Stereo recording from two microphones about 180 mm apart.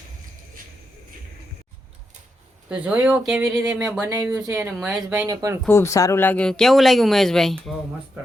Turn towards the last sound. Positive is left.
turn(degrees=0)  # may be behind; listen again after turning